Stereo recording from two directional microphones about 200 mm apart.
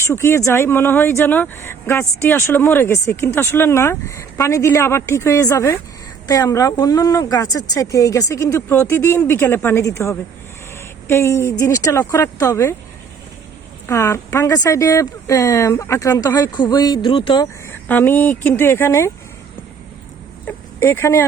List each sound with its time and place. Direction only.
0.0 s speech: 15° left (ahead or behind)
13.8 s speech: 15° left (ahead or behind)
17.8 s speech: 10° left (ahead or behind)
20.7 s speech: 10° left (ahead or behind)